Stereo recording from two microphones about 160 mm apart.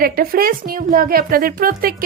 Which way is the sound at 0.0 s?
65° right (ahead or behind).